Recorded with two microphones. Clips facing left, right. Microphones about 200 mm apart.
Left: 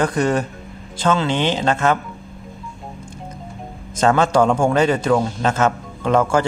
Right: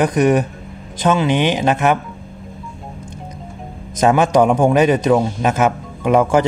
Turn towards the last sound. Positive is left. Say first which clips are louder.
# right 3 dB
turn(degrees=-15)  # may be behind; listen again after turning